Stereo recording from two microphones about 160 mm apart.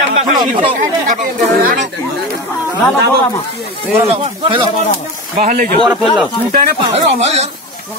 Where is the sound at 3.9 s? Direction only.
35° right (ahead or behind).